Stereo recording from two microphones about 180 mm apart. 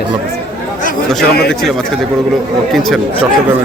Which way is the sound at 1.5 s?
Centre (ahead or behind).